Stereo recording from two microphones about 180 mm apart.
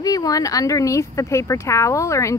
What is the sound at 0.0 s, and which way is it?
Speech, 20° left (ahead or behind).